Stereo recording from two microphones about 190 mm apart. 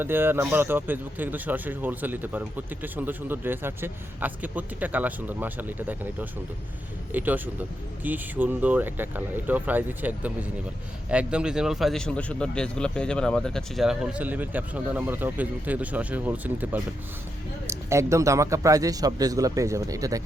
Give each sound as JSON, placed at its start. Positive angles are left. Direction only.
{"t": 0.0, "sound": "speech", "side_deg": -10}
{"t": 7.1, "sound": "speech", "side_deg": -10}